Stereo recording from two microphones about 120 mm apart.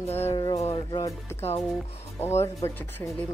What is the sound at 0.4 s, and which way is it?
Music, 35° left (ahead or behind).